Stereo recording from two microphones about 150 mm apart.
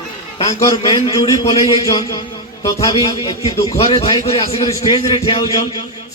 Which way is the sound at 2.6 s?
25° left (ahead or behind).